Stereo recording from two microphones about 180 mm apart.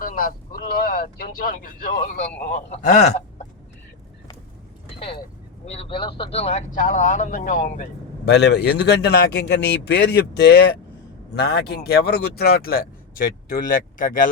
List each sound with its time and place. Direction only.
0.0 s speech: 50° left (ahead or behind)
2.5 s speech: 40° left (ahead or behind)
5.6 s speech: 35° left (ahead or behind)
8.2 s a man's voice: 70° left (ahead or behind); by 14.3 s 50° left (ahead or behind)